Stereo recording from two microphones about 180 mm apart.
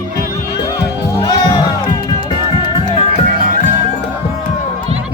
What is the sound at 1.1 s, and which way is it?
Music, 25° left (ahead or behind).